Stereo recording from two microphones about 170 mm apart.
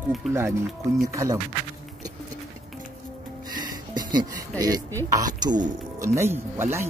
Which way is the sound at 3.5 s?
25° right (ahead or behind).